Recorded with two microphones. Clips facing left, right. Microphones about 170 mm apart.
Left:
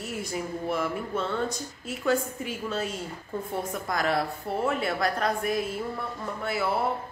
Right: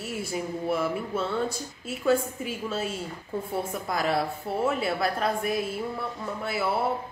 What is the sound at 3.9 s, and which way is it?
Speech, 25° right (ahead or behind).